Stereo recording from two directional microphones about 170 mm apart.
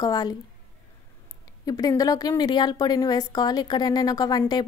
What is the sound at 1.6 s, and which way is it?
A woman's voice, 20° left (ahead or behind).